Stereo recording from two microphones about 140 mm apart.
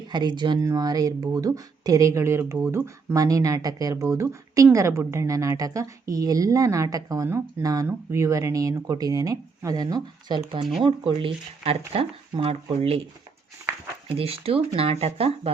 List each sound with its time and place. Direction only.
0.1 s speech: 30° right (ahead or behind)
14.2 s speech: 45° right (ahead or behind)